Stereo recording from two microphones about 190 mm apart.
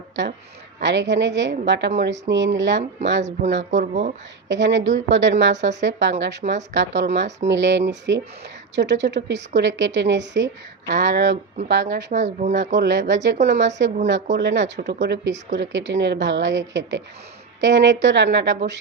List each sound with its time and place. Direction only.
0.2 s a woman's voice: 70° right (ahead or behind)
12.1 s speech: 40° right (ahead or behind)
12.5 s a woman's voice: 70° right (ahead or behind)